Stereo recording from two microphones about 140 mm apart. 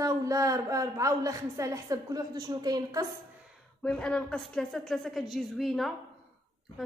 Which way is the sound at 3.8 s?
5° left (ahead or behind).